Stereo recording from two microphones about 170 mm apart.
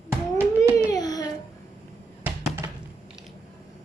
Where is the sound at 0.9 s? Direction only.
20° left (ahead or behind).